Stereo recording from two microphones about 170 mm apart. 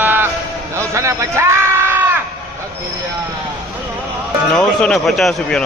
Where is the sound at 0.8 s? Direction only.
15° right (ahead or behind).